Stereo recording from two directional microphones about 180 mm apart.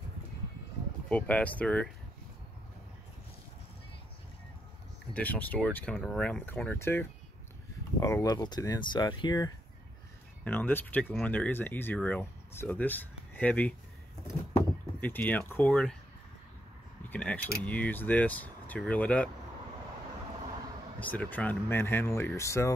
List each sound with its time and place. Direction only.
1.0 s speech: 5° left (ahead or behind)
5.1 s speech: 10° left (ahead or behind); by 9.5 s 25° left (ahead or behind)
10.4 s speech: 10° left (ahead or behind)
17.1 s speech: 5° left (ahead or behind)
21.0 s speech: 10° left (ahead or behind)